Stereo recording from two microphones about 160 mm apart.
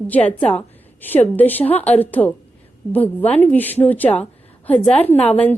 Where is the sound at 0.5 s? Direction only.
10° left (ahead or behind).